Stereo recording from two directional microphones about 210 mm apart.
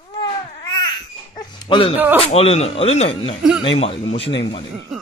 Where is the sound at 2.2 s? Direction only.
30° left (ahead or behind).